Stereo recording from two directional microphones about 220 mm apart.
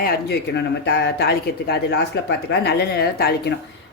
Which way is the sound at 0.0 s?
50° left (ahead or behind).